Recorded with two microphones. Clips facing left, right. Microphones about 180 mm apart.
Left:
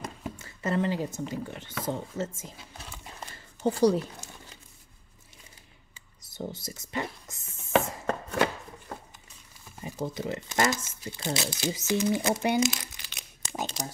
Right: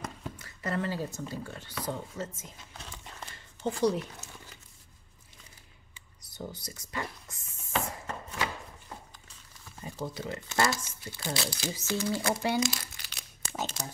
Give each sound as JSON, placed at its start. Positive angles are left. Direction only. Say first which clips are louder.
{"t": 0.4, "sound": "a woman's voice", "louder": "left 5 dB", "side_deg": 25}
{"t": 3.6, "sound": "speech", "louder": "left 5 dB", "side_deg": 35}
{"t": 6.2, "sound": "speech", "louder": "left 4 dB", "side_deg": 25}
{"t": 7.7, "sound": "chopping", "louder": "left 8 dB", "side_deg": 65}
{"t": 10.0, "sound": "speech", "louder": "left 4 dB", "side_deg": 20}